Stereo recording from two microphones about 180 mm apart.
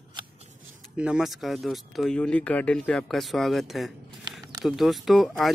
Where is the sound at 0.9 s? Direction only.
5° right (ahead or behind).